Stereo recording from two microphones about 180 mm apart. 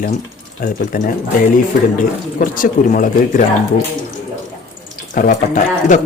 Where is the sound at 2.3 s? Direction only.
50° left (ahead or behind).